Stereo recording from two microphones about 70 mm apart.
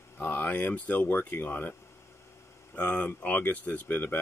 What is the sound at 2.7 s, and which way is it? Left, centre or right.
Speech, centre.